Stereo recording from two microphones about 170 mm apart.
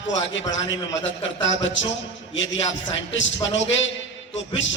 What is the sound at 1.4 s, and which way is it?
A man's voice, 90° left.